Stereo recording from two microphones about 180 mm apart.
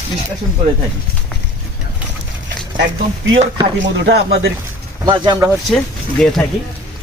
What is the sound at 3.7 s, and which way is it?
Speech, 85° right.